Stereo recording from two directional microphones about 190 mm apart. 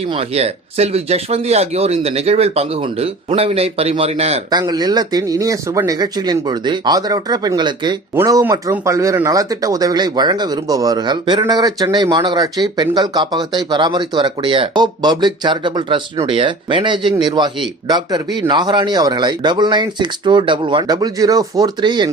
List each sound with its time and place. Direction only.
0.1 s speech: 30° right (ahead or behind)
4.5 s speech: 20° right (ahead or behind)